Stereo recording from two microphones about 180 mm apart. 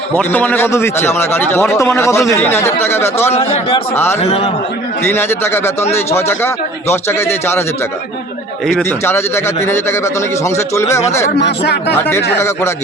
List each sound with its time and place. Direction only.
0.2 s a man's voice: 10° left (ahead or behind)
3.3 s speech: 30° left (ahead or behind)
3.9 s a man's voice: 10° left (ahead or behind)
4.2 s speech: 35° left (ahead or behind)
5.0 s a man's voice: 15° left (ahead or behind)
8.8 s a man's voice: 15° left (ahead or behind)
11.3 s speech: 70° left (ahead or behind)